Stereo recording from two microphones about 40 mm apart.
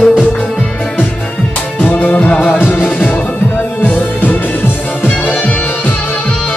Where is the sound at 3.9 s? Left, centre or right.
Left.